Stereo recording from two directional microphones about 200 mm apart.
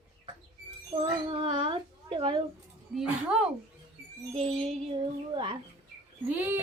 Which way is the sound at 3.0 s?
5° right (ahead or behind).